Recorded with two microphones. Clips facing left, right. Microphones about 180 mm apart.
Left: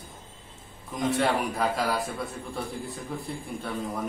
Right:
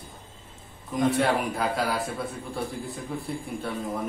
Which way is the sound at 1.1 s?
Centre (ahead or behind).